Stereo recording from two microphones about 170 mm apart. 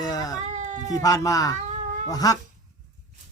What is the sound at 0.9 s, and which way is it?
Speech, 20° left (ahead or behind).